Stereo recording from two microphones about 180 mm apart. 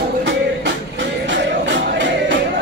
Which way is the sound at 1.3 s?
80° right.